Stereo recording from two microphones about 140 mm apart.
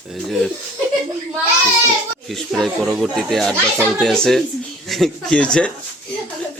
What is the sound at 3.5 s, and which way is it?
Speech, 15° right (ahead or behind).